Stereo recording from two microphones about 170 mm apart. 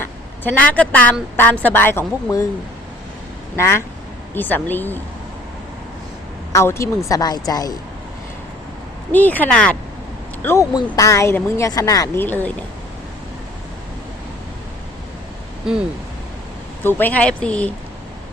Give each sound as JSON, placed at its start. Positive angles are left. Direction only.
{"t": 0.0, "sound": "a sound", "side_deg": 10}
{"t": 1.4, "sound": "speech", "side_deg": 10}
{"t": 3.6, "sound": "speech", "side_deg": 15}
{"t": 6.5, "sound": "a woman's voice", "side_deg": 15}
{"t": 9.1, "sound": "speech", "side_deg": 10}
{"t": 16.8, "sound": "speech", "side_deg": 10}